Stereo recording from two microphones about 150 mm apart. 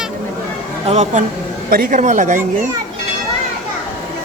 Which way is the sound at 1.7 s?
65° right (ahead or behind).